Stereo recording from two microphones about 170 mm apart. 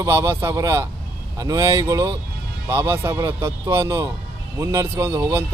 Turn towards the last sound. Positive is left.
turn(degrees=-15)  # may be behind; listen again after turning